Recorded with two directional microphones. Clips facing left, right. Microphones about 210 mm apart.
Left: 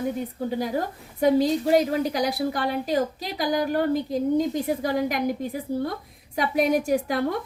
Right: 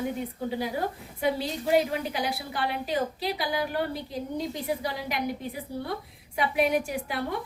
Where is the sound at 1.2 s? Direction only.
40° left (ahead or behind).